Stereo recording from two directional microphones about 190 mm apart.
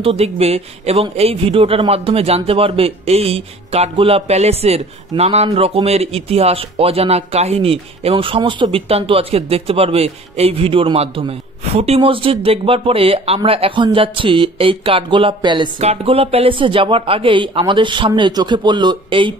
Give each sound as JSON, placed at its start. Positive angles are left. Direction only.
{"t": 0.0, "sound": "a man's voice", "side_deg": -30}